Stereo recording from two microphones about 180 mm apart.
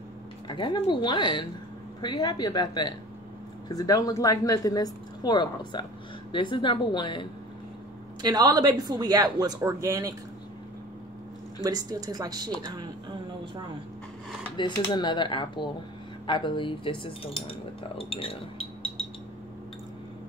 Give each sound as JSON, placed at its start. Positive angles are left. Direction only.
{"t": 0.5, "sound": "a woman's voice", "side_deg": 25}
{"t": 8.2, "sound": "speech", "side_deg": -20}
{"t": 11.6, "sound": "speech", "side_deg": -20}
{"t": 14.9, "sound": "a woman's voice", "side_deg": 25}
{"t": 16.3, "sound": "cutlery", "side_deg": 25}